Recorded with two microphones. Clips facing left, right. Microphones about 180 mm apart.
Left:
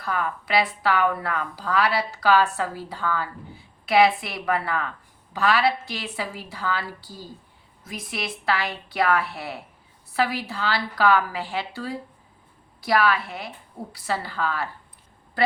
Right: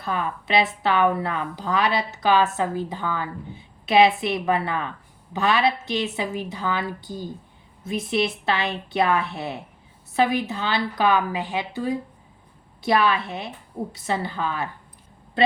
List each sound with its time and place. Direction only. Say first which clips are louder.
0.0 s a woman's voice: right 1 dB; 25° right (ahead or behind)